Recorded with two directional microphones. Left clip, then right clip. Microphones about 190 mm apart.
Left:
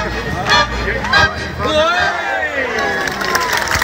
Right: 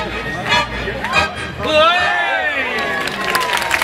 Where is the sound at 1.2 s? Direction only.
45° right (ahead or behind).